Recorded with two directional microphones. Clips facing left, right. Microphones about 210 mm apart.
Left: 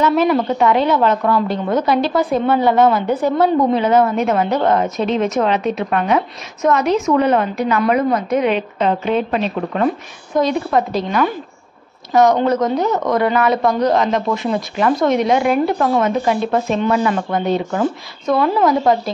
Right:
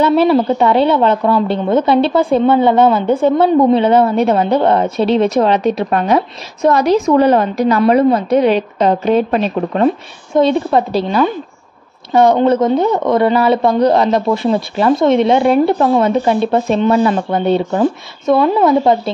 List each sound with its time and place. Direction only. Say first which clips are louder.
0.0 s a woman's voice: right 4 dB; 30° right (ahead or behind)
9.8 s speech: right 5 dB; 30° right (ahead or behind)